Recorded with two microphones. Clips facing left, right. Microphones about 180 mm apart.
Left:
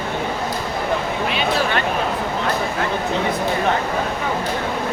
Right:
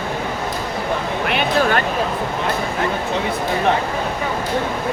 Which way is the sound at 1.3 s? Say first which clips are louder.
Right 4 dB; 55° right (ahead or behind).